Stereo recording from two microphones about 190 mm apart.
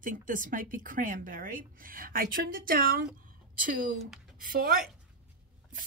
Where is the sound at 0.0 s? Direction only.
45° right (ahead or behind).